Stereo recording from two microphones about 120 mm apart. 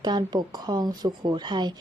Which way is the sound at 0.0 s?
35° right (ahead or behind).